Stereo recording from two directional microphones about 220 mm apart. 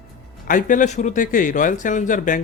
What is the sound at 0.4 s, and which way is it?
Speech, 35° left (ahead or behind).